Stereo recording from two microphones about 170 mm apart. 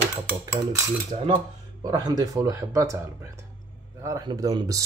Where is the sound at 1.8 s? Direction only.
25° right (ahead or behind).